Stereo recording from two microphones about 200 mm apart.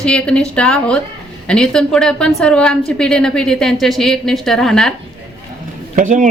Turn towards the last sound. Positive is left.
turn(degrees=-40)  # may be behind; listen again after turning